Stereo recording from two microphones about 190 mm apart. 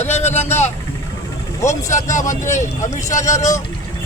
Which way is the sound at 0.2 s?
35° left (ahead or behind).